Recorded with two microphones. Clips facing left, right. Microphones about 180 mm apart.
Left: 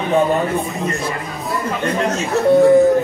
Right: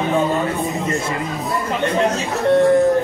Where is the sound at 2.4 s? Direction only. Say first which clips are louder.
Left 3 dB; 5° left (ahead or behind).